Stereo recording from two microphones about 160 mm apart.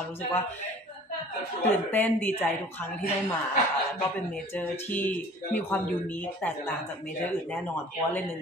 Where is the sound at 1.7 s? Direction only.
10° left (ahead or behind).